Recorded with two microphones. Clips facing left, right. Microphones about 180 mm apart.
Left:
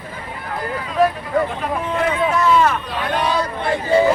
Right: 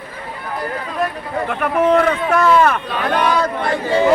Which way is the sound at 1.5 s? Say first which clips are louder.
Right 8 dB; 70° right (ahead or behind).